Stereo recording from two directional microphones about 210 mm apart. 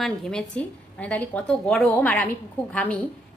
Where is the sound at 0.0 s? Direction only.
Centre (ahead or behind).